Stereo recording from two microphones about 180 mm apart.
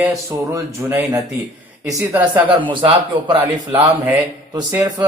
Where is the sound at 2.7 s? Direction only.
25° right (ahead or behind).